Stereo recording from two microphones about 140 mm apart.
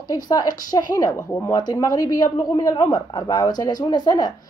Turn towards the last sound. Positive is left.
turn(degrees=30)  # may be behind; listen again after turning